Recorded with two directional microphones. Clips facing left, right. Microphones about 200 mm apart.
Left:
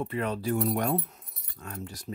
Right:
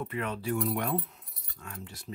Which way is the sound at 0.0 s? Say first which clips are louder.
Left 4 dB; 35° left (ahead or behind).